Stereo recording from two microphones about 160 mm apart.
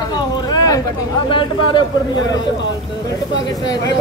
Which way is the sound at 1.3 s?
30° left (ahead or behind).